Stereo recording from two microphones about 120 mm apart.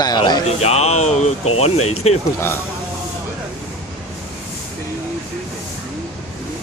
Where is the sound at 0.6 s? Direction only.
65° left (ahead or behind).